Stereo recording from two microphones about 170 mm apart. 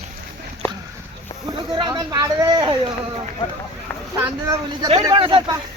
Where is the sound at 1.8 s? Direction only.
25° right (ahead or behind).